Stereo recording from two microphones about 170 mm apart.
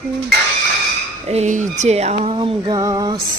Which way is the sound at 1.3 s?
45° right (ahead or behind).